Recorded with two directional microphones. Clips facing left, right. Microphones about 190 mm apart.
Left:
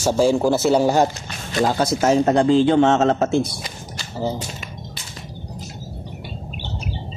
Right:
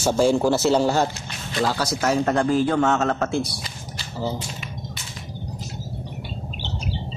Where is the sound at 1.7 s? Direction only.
25° left (ahead or behind).